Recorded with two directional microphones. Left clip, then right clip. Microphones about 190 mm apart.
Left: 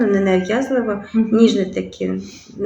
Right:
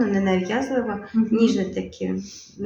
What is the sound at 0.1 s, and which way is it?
Speech, centre (ahead or behind).